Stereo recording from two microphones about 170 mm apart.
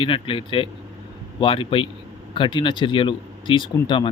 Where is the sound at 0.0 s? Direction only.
30° left (ahead or behind).